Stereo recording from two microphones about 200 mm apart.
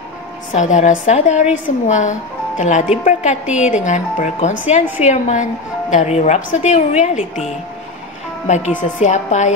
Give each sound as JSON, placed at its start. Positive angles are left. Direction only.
{"t": 0.6, "sound": "a woman's voice", "side_deg": 40}
{"t": 8.5, "sound": "a woman's voice", "side_deg": 40}